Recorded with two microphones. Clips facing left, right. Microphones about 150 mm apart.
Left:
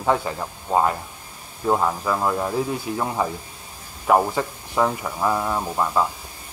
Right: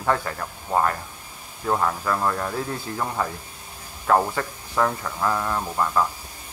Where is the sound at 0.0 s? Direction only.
15° left (ahead or behind).